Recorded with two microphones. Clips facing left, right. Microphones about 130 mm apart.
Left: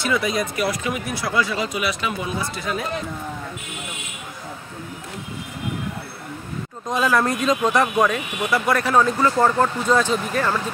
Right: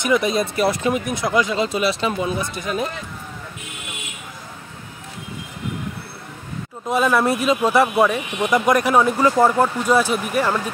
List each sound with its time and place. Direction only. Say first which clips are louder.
0.0 s speech: right 3 dB; 20° right (ahead or behind)
6.9 s speech: right 2 dB; 10° right (ahead or behind)